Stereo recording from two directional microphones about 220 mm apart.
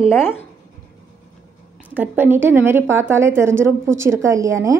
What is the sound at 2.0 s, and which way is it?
A woman's voice, 10° right (ahead or behind).